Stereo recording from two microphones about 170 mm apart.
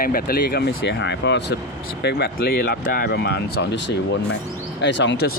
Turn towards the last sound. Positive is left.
turn(degrees=90)